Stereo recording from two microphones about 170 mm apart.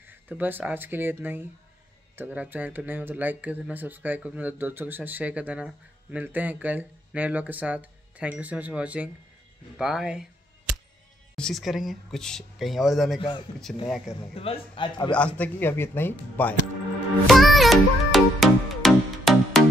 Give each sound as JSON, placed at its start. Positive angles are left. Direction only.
{"t": 0.0, "sound": "speech", "side_deg": -10}
{"t": 11.3, "sound": "speech", "side_deg": 0}
{"t": 14.3, "sound": "a man's voice", "side_deg": 35}
{"t": 15.1, "sound": "a man's voice", "side_deg": 10}
{"t": 17.3, "sound": "music", "side_deg": 0}